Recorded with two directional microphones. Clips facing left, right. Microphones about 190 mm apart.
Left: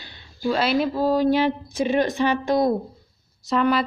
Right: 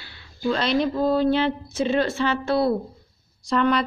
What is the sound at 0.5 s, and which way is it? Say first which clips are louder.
A woman's voice: left 1 dB; 5° left (ahead or behind).